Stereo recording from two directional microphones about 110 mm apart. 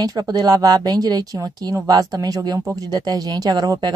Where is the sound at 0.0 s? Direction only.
35° right (ahead or behind).